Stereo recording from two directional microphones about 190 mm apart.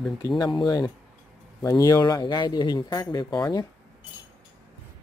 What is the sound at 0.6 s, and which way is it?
Speech, 25° left (ahead or behind).